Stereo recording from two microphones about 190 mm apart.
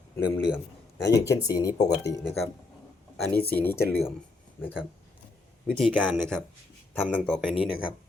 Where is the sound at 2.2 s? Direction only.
Centre (ahead or behind).